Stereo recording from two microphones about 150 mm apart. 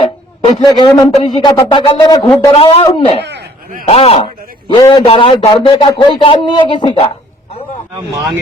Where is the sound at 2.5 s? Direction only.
40° left (ahead or behind).